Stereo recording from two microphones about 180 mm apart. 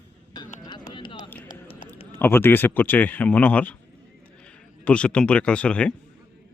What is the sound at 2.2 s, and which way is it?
Speech, 10° left (ahead or behind).